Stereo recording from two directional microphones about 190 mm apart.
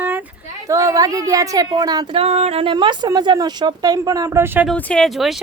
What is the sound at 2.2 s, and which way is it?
A woman's voice, 35° right (ahead or behind).